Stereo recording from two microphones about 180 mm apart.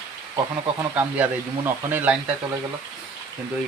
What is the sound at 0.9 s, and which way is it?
Speech, 10° right (ahead or behind).